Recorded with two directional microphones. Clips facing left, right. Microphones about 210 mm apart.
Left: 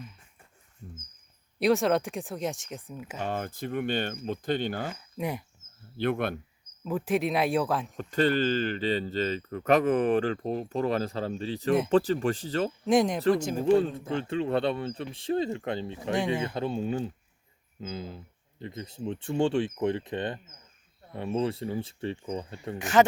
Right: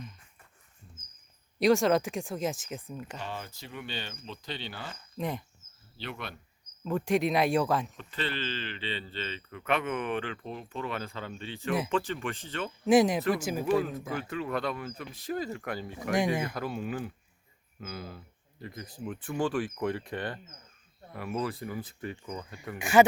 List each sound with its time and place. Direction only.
1.5 s speech: centre (ahead or behind)
3.2 s speech: 50° left (ahead or behind)
4.9 s speech: 10° left (ahead or behind)
6.0 s speech: 55° left (ahead or behind)
6.8 s speech: 5° left (ahead or behind)
7.9 s speech: 45° left (ahead or behind)
12.8 s speech: 5° right (ahead or behind)
13.7 s speech: 30° left (ahead or behind)
16.1 s speech: 10° right (ahead or behind)
16.4 s speech: 25° left (ahead or behind)
22.8 s speech: 10° right (ahead or behind)